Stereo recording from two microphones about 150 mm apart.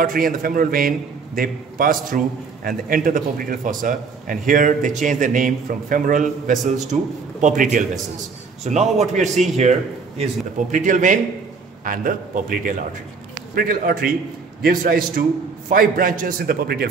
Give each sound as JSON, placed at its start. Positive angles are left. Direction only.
{"t": 0.0, "sound": "a man's voice", "side_deg": -70}
{"t": 8.6, "sound": "a man's voice", "side_deg": -50}